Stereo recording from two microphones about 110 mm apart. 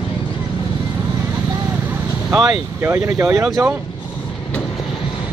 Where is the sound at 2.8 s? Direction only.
25° right (ahead or behind).